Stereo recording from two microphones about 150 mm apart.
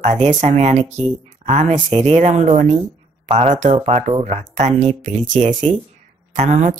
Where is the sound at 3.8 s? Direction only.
35° right (ahead or behind).